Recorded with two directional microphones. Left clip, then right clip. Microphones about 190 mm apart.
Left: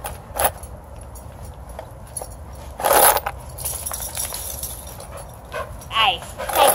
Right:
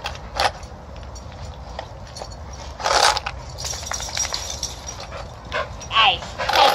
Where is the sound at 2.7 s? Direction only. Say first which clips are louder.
Left 2 dB; 55° left (ahead or behind).